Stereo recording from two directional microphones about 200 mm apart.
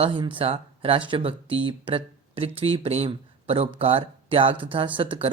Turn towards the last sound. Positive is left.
turn(degrees=-25)  # may be behind; listen again after turning